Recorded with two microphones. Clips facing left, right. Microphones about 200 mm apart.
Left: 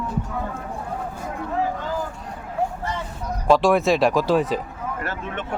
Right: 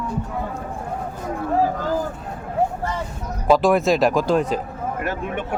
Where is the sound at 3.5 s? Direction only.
Centre (ahead or behind).